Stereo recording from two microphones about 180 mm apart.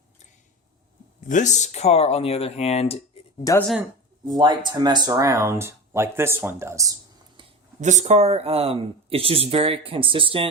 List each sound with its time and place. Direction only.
1.3 s speech: 40° left (ahead or behind)
3.4 s speech: 20° left (ahead or behind)
4.4 s speech: 25° right (ahead or behind)
7.8 s speech: 40° right (ahead or behind)